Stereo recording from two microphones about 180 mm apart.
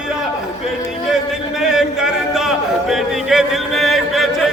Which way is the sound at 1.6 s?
5° right (ahead or behind).